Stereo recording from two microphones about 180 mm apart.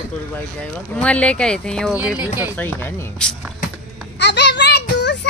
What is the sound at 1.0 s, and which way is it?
Speech, 5° left (ahead or behind).